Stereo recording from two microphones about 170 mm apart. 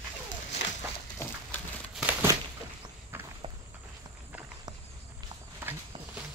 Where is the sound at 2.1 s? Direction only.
15° right (ahead or behind).